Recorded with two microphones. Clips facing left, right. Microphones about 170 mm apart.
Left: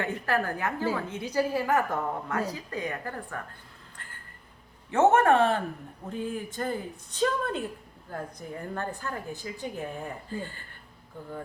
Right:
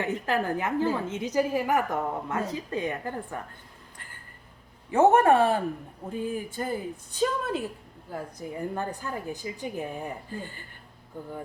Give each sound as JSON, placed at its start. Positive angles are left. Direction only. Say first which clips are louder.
{"t": 0.0, "sound": "a woman's voice", "louder": "right 1 dB", "side_deg": -20}
{"t": 4.9, "sound": "a woman's voice", "louder": "right 2 dB", "side_deg": -15}